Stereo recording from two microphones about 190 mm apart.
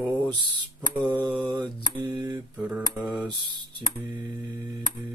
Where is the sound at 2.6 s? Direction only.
10° right (ahead or behind).